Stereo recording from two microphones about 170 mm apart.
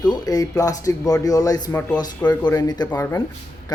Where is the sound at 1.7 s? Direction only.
10° left (ahead or behind).